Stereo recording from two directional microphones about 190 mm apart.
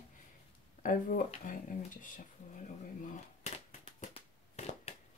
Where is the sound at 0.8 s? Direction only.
45° left (ahead or behind).